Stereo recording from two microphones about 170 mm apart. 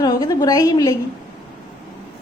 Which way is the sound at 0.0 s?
25° left (ahead or behind).